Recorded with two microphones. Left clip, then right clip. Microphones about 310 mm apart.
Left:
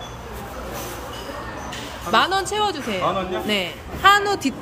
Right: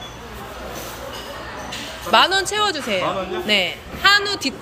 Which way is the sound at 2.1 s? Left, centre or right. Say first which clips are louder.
Right 3 dB; centre.